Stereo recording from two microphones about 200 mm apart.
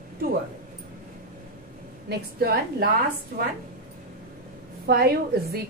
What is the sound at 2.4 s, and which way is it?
Speech, 50° right (ahead or behind).